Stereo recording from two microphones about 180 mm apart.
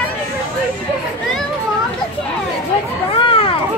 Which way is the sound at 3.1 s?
30° left (ahead or behind).